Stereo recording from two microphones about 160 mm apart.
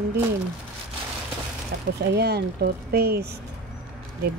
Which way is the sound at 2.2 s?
85° right.